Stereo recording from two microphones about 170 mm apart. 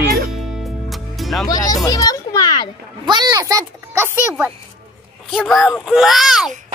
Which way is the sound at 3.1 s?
25° right (ahead or behind).